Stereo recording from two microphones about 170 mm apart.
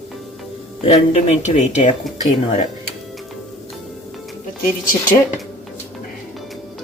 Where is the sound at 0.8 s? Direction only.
40° left (ahead or behind).